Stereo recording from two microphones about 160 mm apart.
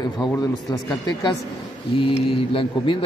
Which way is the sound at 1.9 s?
35° left (ahead or behind).